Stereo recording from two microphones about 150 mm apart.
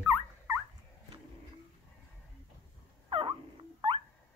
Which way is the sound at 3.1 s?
35° right (ahead or behind).